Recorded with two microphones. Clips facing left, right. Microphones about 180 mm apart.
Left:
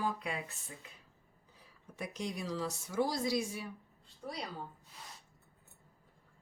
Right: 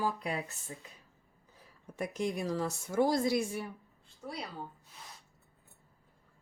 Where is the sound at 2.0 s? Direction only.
50° right (ahead or behind).